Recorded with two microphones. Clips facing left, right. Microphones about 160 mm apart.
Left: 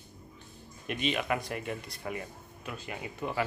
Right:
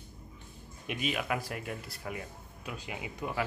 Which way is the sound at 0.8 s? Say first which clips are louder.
Left 2 dB; 5° right (ahead or behind).